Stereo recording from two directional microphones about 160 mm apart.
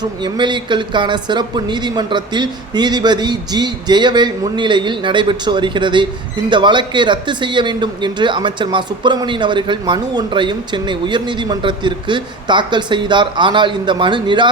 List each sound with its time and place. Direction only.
0.0 s speech: 30° right (ahead or behind)